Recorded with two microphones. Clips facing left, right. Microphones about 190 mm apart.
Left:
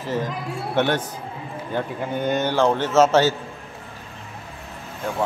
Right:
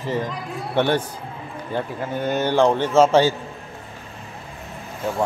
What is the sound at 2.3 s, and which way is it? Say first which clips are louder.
Speech: right 3 dB; 15° right (ahead or behind).